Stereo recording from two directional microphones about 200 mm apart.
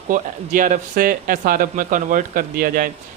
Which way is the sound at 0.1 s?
40° right (ahead or behind).